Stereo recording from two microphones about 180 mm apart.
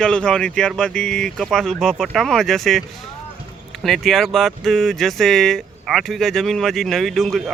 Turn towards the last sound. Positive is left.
turn(degrees=0)  # may be behind; listen again after turning